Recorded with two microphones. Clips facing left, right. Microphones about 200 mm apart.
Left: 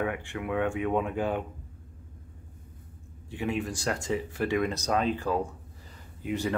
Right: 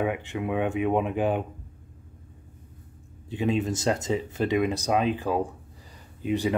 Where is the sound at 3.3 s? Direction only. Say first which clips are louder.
Right 5 dB; 20° right (ahead or behind).